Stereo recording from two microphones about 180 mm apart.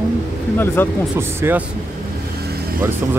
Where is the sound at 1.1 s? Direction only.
15° right (ahead or behind).